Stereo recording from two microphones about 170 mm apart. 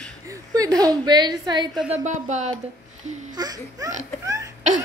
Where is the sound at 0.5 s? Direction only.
20° right (ahead or behind).